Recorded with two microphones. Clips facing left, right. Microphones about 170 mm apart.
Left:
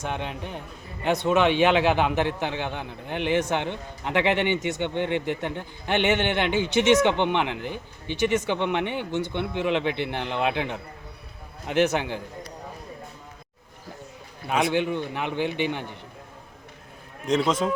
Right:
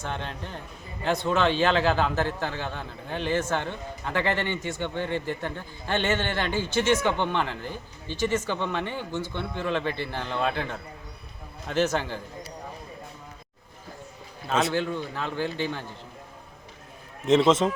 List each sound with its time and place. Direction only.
0.0 s a man's voice: 15° left (ahead or behind)
14.4 s speech: 20° left (ahead or behind)
17.2 s a man's voice: centre (ahead or behind)